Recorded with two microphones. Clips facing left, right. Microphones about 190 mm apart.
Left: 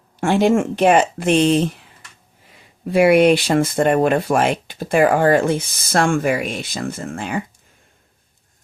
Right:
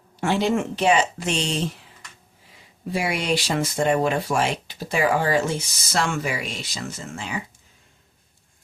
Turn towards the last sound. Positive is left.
turn(degrees=55)  # may be behind; listen again after turning